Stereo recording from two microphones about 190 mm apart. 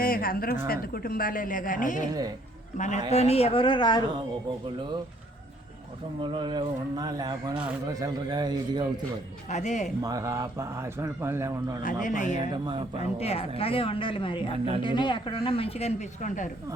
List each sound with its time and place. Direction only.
0.0 s a woman's voice: 50° left (ahead or behind); by 4.0 s 25° left (ahead or behind)
6.2 s speech: 25° right (ahead or behind)
9.5 s speech: 40° left (ahead or behind)
10.0 s a man's voice: 20° right (ahead or behind)
11.8 s speech: 45° left (ahead or behind)